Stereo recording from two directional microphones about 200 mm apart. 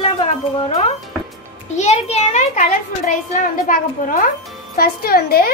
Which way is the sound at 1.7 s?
35° left (ahead or behind).